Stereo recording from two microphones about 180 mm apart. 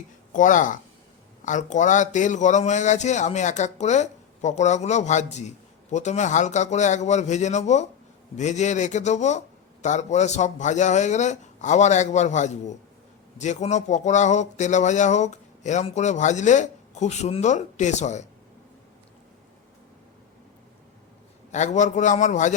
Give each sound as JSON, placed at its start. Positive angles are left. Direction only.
{"t": 0.3, "sound": "a man's voice", "side_deg": 45}
{"t": 21.5, "sound": "a man's voice", "side_deg": 40}